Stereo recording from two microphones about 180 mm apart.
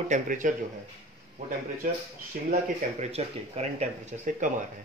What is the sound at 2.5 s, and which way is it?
Speech, 35° right (ahead or behind).